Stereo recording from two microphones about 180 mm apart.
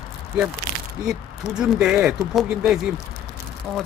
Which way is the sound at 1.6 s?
5° right (ahead or behind).